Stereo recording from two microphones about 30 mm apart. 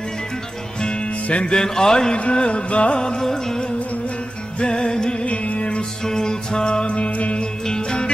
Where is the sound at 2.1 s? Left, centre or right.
Left.